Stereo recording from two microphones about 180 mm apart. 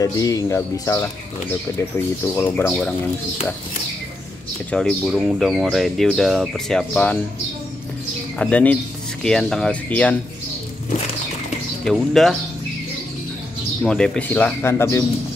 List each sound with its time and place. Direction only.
0.0 s speech: 20° left (ahead or behind)
4.6 s speech: 5° left (ahead or behind)
8.4 s speech: 5° left (ahead or behind)
11.8 s speech: centre (ahead or behind)
13.8 s speech: 5° left (ahead or behind)